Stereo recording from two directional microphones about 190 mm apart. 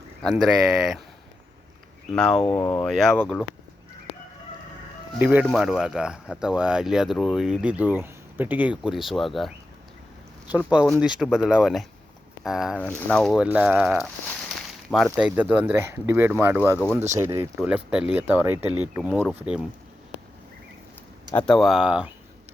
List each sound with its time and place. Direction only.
0.2 s speech: centre (ahead or behind)
2.1 s speech: 5° left (ahead or behind)
2.4 s speech: 20° left (ahead or behind)
2.8 s speech: centre (ahead or behind)
5.2 s speech: 5° right (ahead or behind)
10.7 s speech: centre (ahead or behind)
14.5 s a sound: centre (ahead or behind)
15.1 s speech: 10° right (ahead or behind)
16.7 s speech: 10° left (ahead or behind)
17.2 s speech: 15° right (ahead or behind)
21.3 s speech: 5° left (ahead or behind)